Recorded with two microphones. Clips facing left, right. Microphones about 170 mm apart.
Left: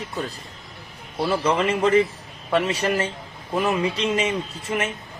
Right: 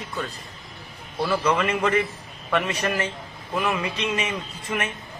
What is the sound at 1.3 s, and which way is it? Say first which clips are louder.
Speech: left 1 dB; 30° left (ahead or behind).